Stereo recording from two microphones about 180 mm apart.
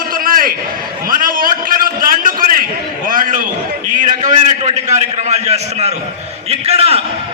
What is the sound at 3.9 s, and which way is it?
A man's voice, 45° right (ahead or behind).